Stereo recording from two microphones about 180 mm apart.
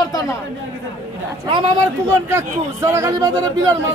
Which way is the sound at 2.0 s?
15° right (ahead or behind).